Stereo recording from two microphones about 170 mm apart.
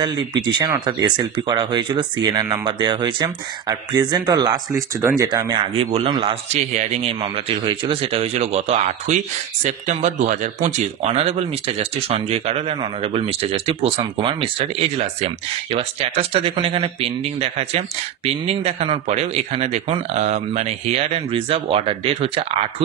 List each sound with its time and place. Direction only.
0.0 s speech: 25° right (ahead or behind)
6.5 s a man's voice: 40° right (ahead or behind)